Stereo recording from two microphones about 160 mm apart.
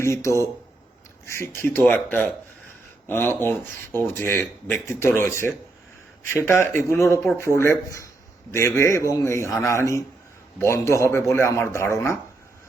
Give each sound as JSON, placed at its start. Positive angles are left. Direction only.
{"t": 0.0, "sound": "speech", "side_deg": 15}